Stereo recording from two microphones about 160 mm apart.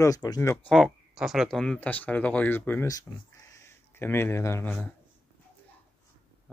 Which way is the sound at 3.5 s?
15° left (ahead or behind).